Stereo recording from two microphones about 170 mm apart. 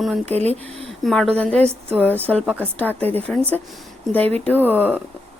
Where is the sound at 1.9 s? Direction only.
10° right (ahead or behind).